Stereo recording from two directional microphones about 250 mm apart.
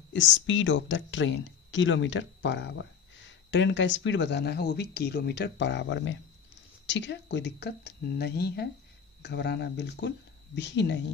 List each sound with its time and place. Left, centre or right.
0.1 s speech: left